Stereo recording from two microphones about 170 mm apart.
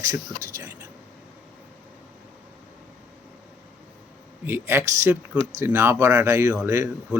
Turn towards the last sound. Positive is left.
turn(degrees=-10)  # may be behind; listen again after turning